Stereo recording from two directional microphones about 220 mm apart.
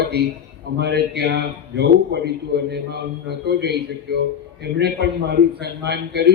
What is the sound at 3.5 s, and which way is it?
A man's voice, 50° right (ahead or behind).